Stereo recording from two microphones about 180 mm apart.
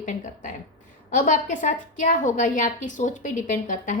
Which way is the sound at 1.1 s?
45° left (ahead or behind).